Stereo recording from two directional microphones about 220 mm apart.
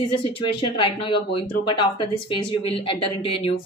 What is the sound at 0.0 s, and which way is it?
Speech, 20° left (ahead or behind).